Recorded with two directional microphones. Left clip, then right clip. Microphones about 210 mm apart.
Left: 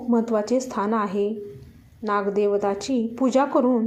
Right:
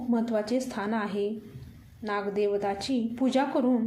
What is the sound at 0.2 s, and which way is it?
A woman's voice, 15° left (ahead or behind).